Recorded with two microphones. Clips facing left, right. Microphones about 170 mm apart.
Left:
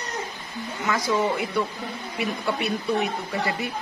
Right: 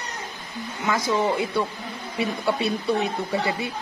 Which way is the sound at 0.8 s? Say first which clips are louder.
Right 1 dB; 20° right (ahead or behind).